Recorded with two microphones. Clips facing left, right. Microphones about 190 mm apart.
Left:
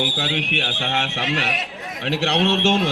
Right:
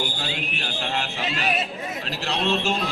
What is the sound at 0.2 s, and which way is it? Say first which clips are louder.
A man's voice: left 6 dB; 90° left.